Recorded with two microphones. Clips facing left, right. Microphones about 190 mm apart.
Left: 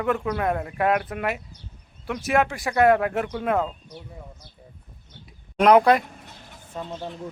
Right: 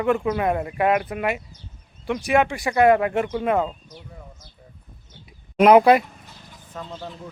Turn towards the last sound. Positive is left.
turn(degrees=20)  # may be behind; listen again after turning